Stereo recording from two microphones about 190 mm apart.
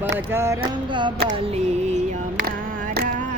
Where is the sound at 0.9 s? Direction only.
25° right (ahead or behind).